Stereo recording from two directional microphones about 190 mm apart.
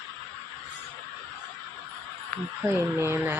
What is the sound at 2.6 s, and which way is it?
Speech, 15° right (ahead or behind).